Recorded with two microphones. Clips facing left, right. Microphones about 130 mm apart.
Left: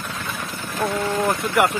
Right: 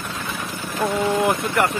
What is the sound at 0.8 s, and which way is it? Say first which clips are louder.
Speech: right 2 dB; 15° right (ahead or behind).